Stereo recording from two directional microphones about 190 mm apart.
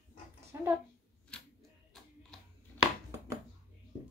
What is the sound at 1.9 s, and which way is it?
Music, centre (ahead or behind).